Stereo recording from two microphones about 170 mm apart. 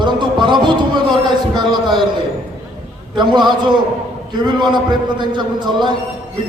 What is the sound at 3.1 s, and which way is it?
A man's voice, 25° right (ahead or behind).